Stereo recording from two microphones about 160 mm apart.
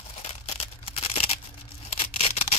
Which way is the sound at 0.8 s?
35° left (ahead or behind).